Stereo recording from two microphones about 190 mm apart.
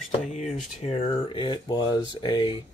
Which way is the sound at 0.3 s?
35° left (ahead or behind).